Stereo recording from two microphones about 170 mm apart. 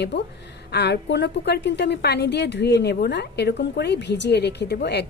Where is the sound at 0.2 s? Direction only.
85° left.